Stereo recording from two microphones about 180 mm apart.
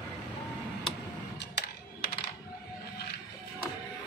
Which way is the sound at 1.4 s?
65° left (ahead or behind).